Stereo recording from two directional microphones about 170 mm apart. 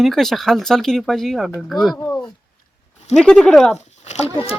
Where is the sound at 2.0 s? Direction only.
20° left (ahead or behind).